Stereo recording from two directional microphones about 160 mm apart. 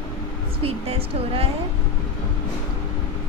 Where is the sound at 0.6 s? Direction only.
40° right (ahead or behind).